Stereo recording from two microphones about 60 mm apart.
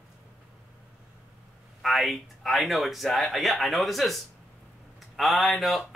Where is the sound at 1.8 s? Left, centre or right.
Centre.